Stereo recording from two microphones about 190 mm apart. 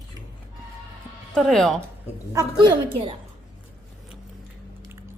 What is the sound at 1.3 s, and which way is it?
Speech, centre (ahead or behind).